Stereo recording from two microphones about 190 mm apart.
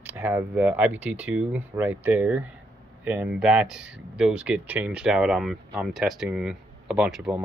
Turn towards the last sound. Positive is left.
turn(degrees=-5)  # may be behind; listen again after turning